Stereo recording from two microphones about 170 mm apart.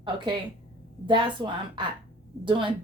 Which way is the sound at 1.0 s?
30° right (ahead or behind).